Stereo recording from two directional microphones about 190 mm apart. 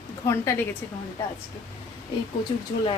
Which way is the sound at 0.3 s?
10° left (ahead or behind).